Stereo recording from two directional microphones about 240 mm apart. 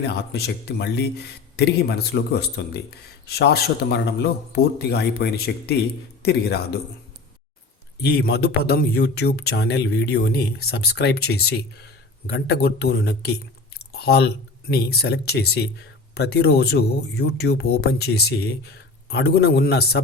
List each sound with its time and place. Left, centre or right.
0.0 s speech: left
8.0 s speech: left